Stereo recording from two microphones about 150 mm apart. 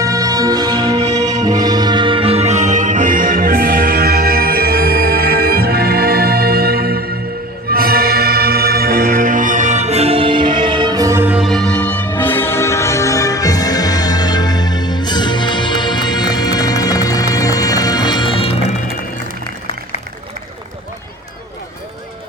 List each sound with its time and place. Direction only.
0.0 s music: 25° right (ahead or behind)
11.3 s music: centre (ahead or behind); by 18.5 s 35° left (ahead or behind)